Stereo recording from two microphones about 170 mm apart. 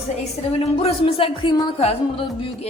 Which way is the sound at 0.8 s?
35° left (ahead or behind).